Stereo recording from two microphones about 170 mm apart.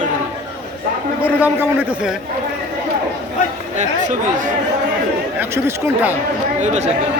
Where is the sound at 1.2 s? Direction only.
10° right (ahead or behind).